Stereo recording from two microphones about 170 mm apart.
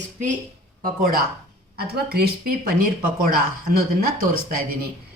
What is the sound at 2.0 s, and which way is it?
Speech, 65° right (ahead or behind).